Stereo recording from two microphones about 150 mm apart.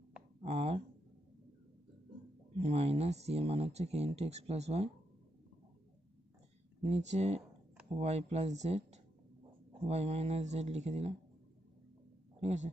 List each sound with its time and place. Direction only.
0.4 s a sound: 45° right (ahead or behind)
2.5 s speech: 45° right (ahead or behind)
6.8 s speech: 50° right (ahead or behind)
12.4 s a man's voice: 45° right (ahead or behind)